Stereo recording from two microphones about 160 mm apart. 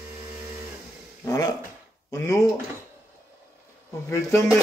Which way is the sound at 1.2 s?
20° left (ahead or behind).